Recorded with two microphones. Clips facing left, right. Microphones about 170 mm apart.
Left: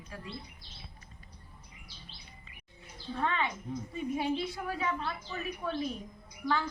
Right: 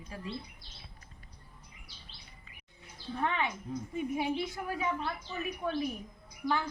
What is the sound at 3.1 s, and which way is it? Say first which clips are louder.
Speech: even; 10° right (ahead or behind).